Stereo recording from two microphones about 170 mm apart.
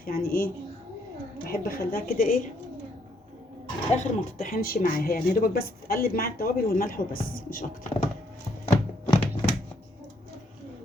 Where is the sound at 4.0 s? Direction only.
55° left (ahead or behind).